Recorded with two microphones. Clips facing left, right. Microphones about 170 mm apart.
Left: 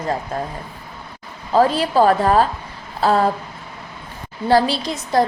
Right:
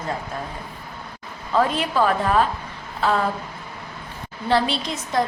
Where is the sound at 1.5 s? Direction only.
35° left (ahead or behind).